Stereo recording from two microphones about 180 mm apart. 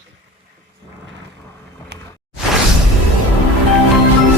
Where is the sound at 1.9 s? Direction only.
65° right (ahead or behind).